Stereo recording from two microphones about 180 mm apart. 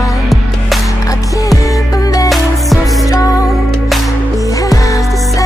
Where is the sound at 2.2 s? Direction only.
Centre (ahead or behind).